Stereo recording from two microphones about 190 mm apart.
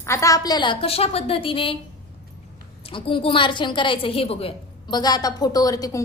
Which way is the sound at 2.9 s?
25° left (ahead or behind).